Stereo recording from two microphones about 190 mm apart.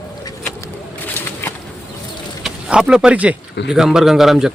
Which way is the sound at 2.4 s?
5° right (ahead or behind).